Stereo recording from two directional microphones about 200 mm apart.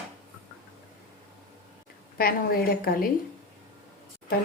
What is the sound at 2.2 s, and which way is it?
Speech, 50° left (ahead or behind).